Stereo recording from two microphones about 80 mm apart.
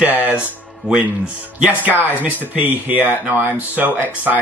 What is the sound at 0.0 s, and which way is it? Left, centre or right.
Speech, centre.